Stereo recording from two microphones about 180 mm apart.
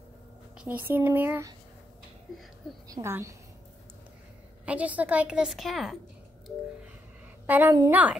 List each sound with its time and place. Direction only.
0.6 s speech: 10° right (ahead or behind)
2.9 s speech: 15° right (ahead or behind)
4.6 s a woman's voice: 10° right (ahead or behind)
7.4 s a woman's voice: 10° right (ahead or behind)